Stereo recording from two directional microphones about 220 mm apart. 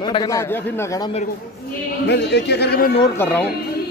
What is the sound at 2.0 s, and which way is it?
Speech, 50° left (ahead or behind).